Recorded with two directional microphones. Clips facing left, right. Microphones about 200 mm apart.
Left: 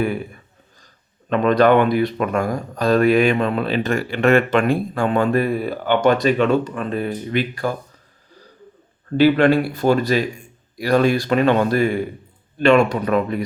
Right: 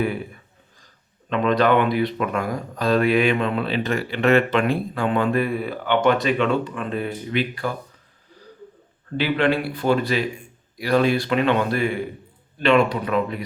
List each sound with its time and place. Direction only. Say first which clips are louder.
1.3 s speech: left 4 dB; 45° left (ahead or behind)
9.1 s speech: left 7 dB; 40° left (ahead or behind)